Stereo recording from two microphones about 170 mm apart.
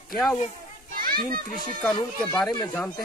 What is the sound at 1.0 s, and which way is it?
Speech, 60° right (ahead or behind).